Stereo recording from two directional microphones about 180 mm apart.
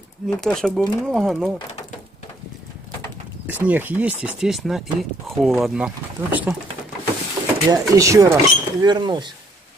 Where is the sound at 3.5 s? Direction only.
10° right (ahead or behind).